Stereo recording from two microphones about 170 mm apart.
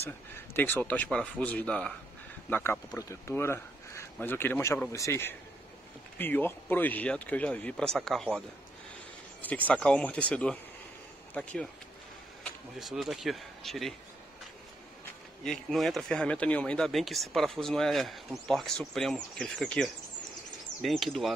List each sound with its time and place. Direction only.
0.6 s a man's voice: 10° left (ahead or behind)
9.7 s a man's voice: 5° left (ahead or behind)
15.4 s speech: centre (ahead or behind)